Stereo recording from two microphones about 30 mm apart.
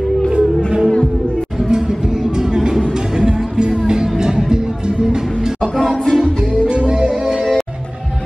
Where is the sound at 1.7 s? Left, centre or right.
Centre.